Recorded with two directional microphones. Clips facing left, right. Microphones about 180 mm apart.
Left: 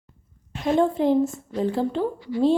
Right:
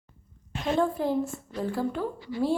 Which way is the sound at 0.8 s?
20° left (ahead or behind).